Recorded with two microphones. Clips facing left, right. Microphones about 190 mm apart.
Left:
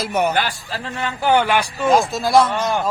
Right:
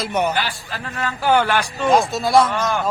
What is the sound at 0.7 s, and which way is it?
A man's voice, 25° left (ahead or behind).